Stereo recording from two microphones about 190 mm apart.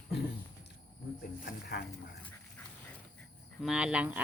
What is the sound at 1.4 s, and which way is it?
Speech, 55° left (ahead or behind).